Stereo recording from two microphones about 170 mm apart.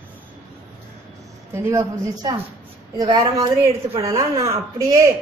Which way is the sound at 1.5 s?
15° right (ahead or behind).